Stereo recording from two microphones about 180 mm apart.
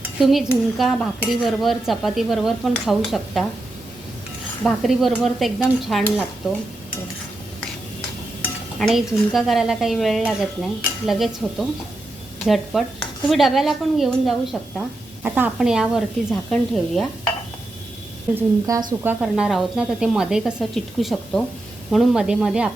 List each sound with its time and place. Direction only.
0.2 s speech: 5° right (ahead or behind)
4.6 s speech: centre (ahead or behind)
8.8 s speech: centre (ahead or behind)
18.3 s a woman's voice: 20° right (ahead or behind)
19.0 s speech: 5° right (ahead or behind)